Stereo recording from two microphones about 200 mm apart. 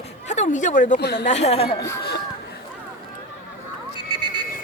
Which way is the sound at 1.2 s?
35° left (ahead or behind).